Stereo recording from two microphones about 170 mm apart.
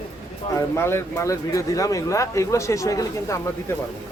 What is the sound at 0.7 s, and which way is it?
Speech, 15° left (ahead or behind).